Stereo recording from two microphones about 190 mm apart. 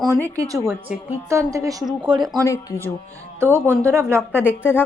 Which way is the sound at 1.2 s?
15° right (ahead or behind).